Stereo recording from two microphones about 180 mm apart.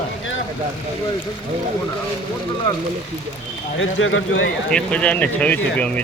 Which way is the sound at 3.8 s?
90° left.